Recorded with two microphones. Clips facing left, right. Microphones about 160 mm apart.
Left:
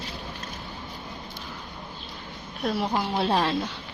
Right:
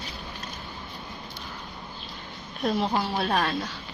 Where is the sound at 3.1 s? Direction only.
25° left (ahead or behind).